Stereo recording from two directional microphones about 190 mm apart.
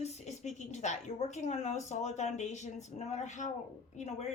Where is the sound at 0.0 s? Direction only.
35° left (ahead or behind).